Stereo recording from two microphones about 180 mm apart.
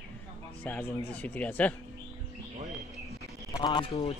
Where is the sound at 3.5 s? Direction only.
25° left (ahead or behind).